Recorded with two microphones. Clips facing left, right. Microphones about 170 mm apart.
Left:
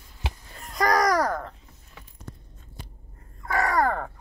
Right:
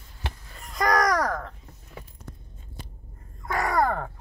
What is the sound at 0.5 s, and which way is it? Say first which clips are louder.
Babbling: left 1 dB; centre (ahead or behind).